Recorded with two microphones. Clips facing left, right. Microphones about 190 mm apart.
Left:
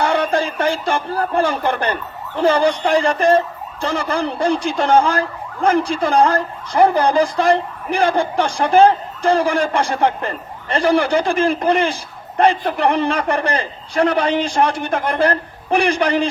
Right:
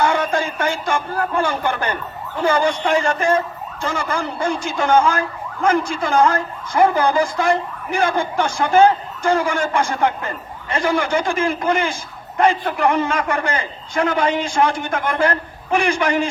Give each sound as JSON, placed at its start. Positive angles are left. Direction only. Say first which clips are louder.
{"t": 0.0, "sound": "speech", "louder": "left 1 dB", "side_deg": 35}